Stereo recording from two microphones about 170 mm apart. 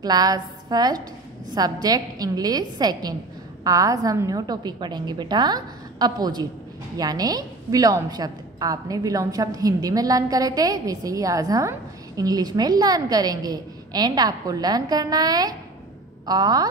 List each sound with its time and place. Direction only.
0.0 s a woman's voice: 25° right (ahead or behind)